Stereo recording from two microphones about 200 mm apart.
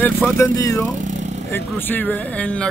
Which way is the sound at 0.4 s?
15° left (ahead or behind).